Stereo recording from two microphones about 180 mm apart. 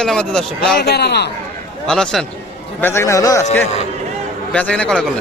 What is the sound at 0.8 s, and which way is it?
Speech, 65° left (ahead or behind).